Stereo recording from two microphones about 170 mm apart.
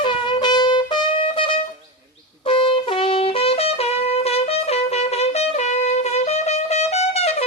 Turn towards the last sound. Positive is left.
turn(degrees=40)  # may be behind; listen again after turning